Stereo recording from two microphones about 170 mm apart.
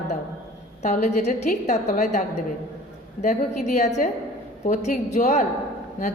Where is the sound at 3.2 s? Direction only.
45° left (ahead or behind).